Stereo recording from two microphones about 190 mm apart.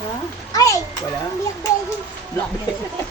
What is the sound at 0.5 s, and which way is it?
Speech, 20° left (ahead or behind).